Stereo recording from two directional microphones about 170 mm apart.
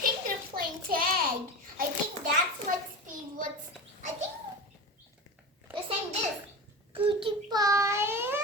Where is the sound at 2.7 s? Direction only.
50° right (ahead or behind).